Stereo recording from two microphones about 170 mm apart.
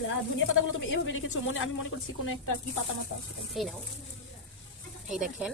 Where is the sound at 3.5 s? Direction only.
Centre (ahead or behind).